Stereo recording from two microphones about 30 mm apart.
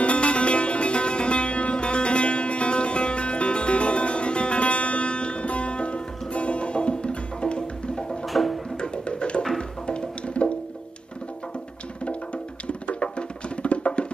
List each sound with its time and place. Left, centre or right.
0.0 s music: left
8.3 s music: centre
8.8 s music: left
12.6 s music: left